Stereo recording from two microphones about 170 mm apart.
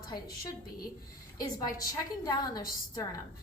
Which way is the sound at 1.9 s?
20° left (ahead or behind).